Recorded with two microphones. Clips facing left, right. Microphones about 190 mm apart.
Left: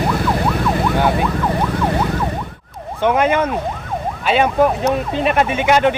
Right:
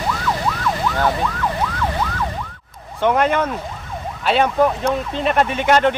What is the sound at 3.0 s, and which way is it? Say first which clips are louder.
Speech: left 2 dB; 5° left (ahead or behind).